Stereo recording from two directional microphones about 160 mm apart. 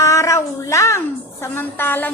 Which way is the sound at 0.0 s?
20° left (ahead or behind).